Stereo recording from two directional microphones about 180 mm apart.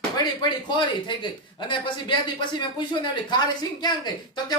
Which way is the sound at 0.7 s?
25° left (ahead or behind).